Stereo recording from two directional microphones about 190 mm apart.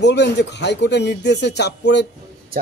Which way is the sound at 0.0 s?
65° left (ahead or behind).